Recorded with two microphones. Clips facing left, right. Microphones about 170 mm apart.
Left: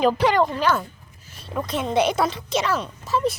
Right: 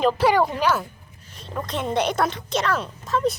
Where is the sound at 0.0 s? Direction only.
5° left (ahead or behind).